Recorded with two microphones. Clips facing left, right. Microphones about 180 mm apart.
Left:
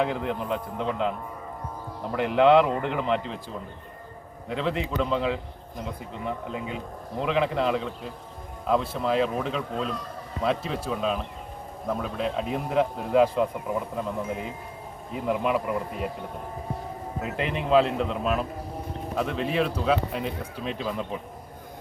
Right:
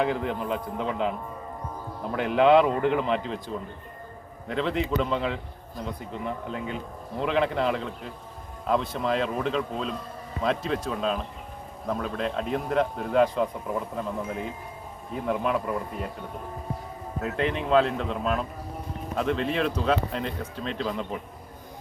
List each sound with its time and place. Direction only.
0.0 s a man's voice: centre (ahead or behind)
2.1 s a man's voice: centre (ahead or behind)
15.1 s a man's voice: 5° left (ahead or behind)
17.2 s a man's voice: 5° left (ahead or behind)